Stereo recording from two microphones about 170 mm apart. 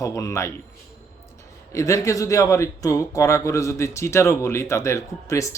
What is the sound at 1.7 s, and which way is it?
A man's voice, 20° left (ahead or behind).